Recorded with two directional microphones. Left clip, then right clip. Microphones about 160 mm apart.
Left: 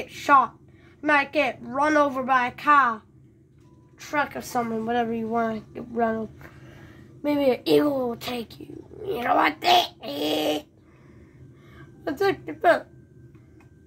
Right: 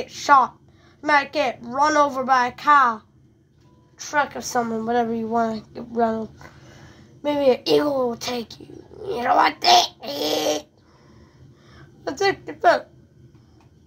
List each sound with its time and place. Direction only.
0.0 s a woman's voice: 25° left (ahead or behind)
4.0 s a woman's voice: 20° left (ahead or behind)
12.0 s a woman's voice: 20° left (ahead or behind)